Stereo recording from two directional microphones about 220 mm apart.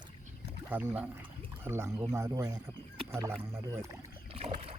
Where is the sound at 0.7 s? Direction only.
10° right (ahead or behind).